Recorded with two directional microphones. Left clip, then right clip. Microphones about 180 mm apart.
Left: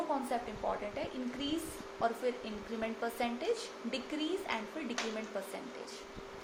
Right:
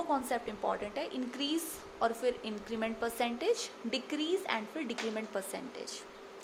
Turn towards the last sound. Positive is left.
turn(degrees=-45)  # may be behind; listen again after turning